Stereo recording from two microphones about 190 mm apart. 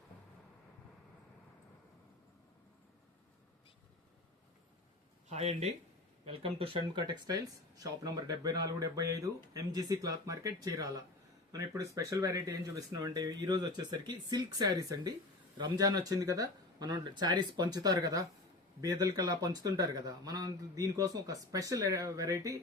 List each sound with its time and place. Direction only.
5.3 s speech: 35° right (ahead or behind); by 22.5 s 15° right (ahead or behind)